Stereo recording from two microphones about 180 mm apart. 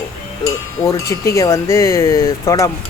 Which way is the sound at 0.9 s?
15° left (ahead or behind).